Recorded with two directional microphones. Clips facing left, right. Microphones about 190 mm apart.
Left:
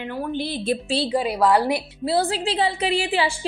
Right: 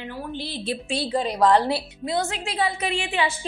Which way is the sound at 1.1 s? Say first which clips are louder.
Right 1 dB; 10° left (ahead or behind).